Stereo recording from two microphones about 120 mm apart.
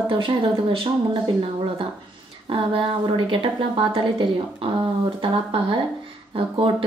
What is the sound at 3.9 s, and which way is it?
Speech, 45° right (ahead or behind).